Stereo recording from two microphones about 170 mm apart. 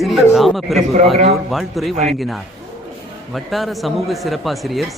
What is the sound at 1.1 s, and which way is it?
Speech, 35° right (ahead or behind).